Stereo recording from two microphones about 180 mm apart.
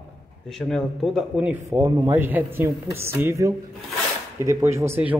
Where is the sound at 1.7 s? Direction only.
10° right (ahead or behind).